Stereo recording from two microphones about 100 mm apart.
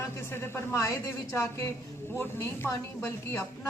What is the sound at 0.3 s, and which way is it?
A woman's voice, 25° left (ahead or behind).